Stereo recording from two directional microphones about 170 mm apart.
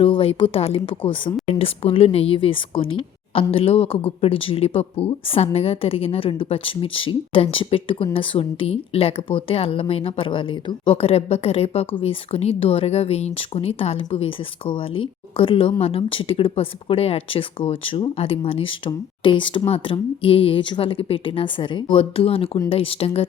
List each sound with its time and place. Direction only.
0.0 s speech: 35° left (ahead or behind)